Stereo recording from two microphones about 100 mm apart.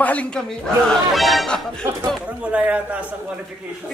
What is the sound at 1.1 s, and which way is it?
Speech, centre (ahead or behind).